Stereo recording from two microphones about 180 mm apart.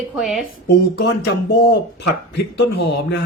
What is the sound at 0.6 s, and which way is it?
Speech, 65° left (ahead or behind).